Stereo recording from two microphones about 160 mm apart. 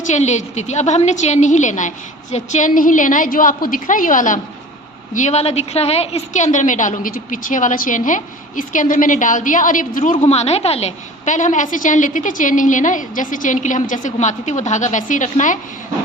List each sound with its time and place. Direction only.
0.0 s a woman's voice: 45° left (ahead or behind)